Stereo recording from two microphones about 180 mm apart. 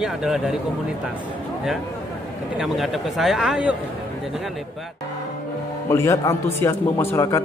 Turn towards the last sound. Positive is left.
turn(degrees=15)  # may be behind; listen again after turning